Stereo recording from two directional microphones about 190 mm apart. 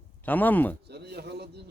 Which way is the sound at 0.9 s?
60° right (ahead or behind).